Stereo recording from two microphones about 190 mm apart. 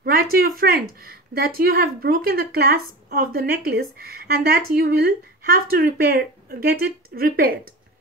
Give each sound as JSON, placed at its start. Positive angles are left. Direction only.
{"t": 0.0, "sound": "a woman's voice", "side_deg": -50}